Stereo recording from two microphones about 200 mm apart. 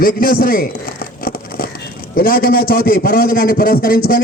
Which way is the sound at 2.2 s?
45° left (ahead or behind).